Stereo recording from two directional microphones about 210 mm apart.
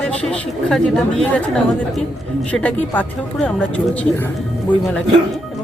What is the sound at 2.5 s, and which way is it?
A woman's voice, 5° left (ahead or behind).